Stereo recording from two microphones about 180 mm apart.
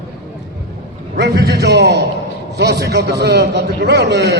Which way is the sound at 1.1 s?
65° right (ahead or behind).